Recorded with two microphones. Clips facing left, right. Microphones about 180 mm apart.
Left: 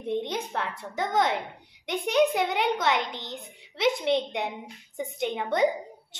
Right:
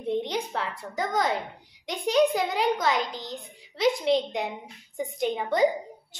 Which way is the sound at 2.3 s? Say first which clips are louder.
Even; 25° left (ahead or behind).